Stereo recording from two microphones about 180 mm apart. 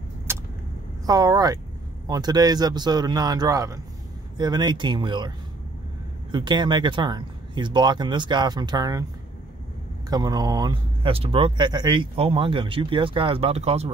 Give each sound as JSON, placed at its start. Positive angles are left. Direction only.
{"t": 0.3, "sound": "vehicle", "side_deg": -15}
{"t": 1.0, "sound": "speech", "side_deg": -20}
{"t": 6.3, "sound": "speech", "side_deg": -25}
{"t": 10.0, "sound": "speech", "side_deg": -20}